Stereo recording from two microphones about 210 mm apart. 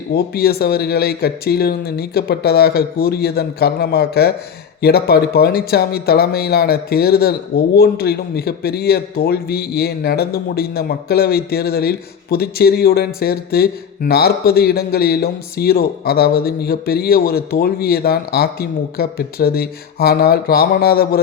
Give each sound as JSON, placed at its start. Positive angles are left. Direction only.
{"t": 0.1, "sound": "speech", "side_deg": 45}